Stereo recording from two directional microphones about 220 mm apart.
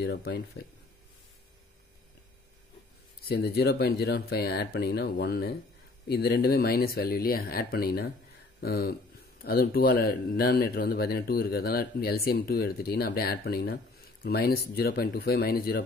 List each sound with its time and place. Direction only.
0.0 s speech: 50° left (ahead or behind)
3.2 s speech: 45° left (ahead or behind)